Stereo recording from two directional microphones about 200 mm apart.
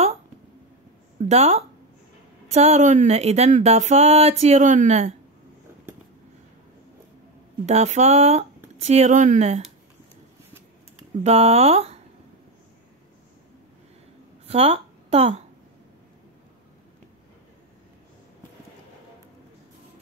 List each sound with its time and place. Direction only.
1.3 s speech: 30° right (ahead or behind)
7.6 s speech: 35° right (ahead or behind)
11.2 s speech: 30° right (ahead or behind)
14.5 s speech: 30° right (ahead or behind)